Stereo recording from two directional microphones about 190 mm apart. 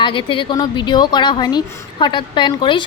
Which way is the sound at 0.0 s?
25° left (ahead or behind).